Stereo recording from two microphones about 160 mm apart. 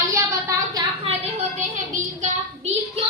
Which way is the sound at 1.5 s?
50° right (ahead or behind).